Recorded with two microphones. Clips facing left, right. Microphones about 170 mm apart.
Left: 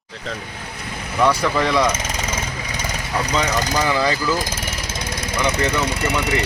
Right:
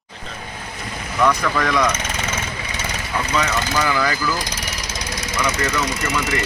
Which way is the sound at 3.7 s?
25° left (ahead or behind).